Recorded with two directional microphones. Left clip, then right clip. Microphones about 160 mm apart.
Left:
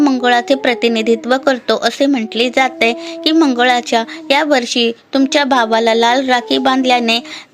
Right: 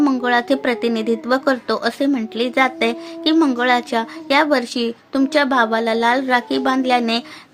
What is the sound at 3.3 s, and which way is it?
Speech, 5° left (ahead or behind).